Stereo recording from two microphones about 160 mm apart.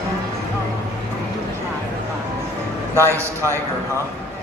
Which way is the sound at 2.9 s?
15° right (ahead or behind).